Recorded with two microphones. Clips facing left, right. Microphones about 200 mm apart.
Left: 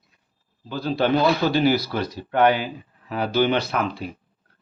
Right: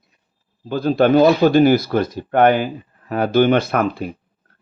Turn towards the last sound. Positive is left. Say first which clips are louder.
# right 6 dB
turn(degrees=-50)  # may be behind; listen again after turning